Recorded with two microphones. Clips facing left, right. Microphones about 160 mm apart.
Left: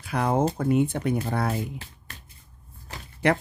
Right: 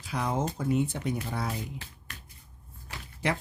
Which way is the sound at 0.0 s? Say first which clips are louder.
Left 7 dB; 60° left (ahead or behind).